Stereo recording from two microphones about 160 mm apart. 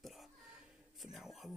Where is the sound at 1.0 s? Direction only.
Centre (ahead or behind).